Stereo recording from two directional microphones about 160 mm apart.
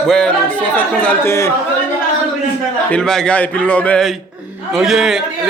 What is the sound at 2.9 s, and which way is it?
A man's voice, 5° left (ahead or behind).